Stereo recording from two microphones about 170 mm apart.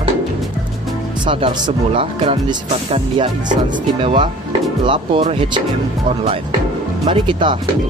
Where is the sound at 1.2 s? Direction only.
30° right (ahead or behind).